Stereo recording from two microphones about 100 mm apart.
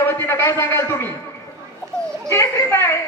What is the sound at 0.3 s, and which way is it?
Speech, 25° left (ahead or behind).